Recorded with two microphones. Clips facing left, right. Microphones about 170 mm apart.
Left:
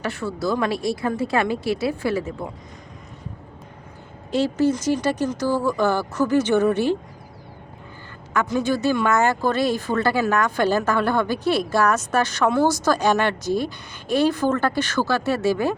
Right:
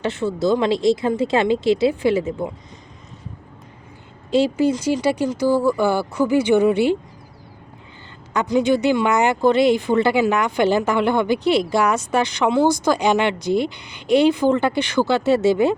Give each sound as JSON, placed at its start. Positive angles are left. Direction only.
{"t": 0.0, "sound": "speech", "side_deg": -20}
{"t": 4.3, "sound": "speech", "side_deg": -15}
{"t": 8.3, "sound": "speech", "side_deg": -20}